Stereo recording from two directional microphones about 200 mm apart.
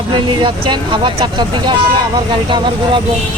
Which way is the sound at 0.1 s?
25° right (ahead or behind).